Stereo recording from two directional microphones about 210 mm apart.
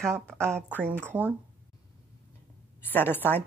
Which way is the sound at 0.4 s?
10° right (ahead or behind).